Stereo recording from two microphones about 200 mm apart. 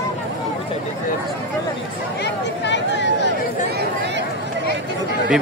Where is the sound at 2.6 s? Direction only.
60° left (ahead or behind).